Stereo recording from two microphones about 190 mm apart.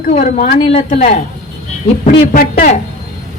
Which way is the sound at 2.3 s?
45° left (ahead or behind).